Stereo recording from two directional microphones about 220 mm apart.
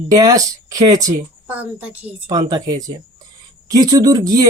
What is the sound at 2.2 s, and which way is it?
Speech, 20° right (ahead or behind).